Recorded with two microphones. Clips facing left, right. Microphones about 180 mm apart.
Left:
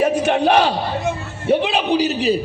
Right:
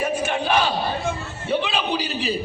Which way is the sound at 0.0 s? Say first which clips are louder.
Left 7 dB; 65° left (ahead or behind).